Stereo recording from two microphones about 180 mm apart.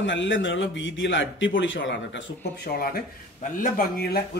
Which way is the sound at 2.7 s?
50° left (ahead or behind).